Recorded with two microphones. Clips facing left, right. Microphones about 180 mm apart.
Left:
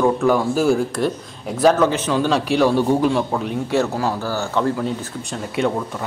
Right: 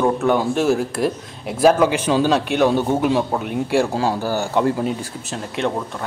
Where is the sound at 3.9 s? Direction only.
25° right (ahead or behind).